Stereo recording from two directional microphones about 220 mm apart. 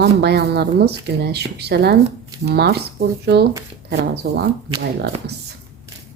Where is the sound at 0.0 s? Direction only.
50° right (ahead or behind).